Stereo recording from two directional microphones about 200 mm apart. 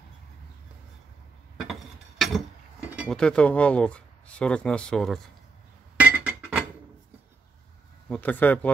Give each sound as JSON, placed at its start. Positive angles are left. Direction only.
{"t": 1.7, "sound": "a sound", "side_deg": 0}
{"t": 3.0, "sound": "speech", "side_deg": 5}
{"t": 5.9, "sound": "chink", "side_deg": -5}
{"t": 8.1, "sound": "speech", "side_deg": 10}